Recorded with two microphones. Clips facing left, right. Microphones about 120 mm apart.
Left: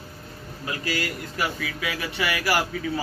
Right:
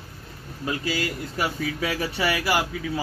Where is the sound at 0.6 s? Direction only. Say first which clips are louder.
Right 2 dB; 25° right (ahead or behind).